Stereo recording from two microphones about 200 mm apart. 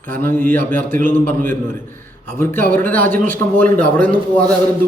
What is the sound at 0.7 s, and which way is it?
Speech, 40° right (ahead or behind).